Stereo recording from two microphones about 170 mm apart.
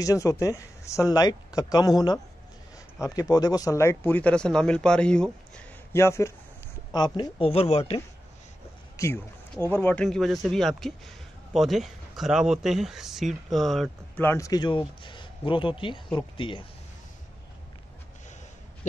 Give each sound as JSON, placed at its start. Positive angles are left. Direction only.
{"t": 0.0, "sound": "speech", "side_deg": 20}
{"t": 5.9, "sound": "speech", "side_deg": 15}
{"t": 8.9, "sound": "speech", "side_deg": 15}
{"t": 10.0, "sound": "speech", "side_deg": 0}
{"t": 14.2, "sound": "speech", "side_deg": 15}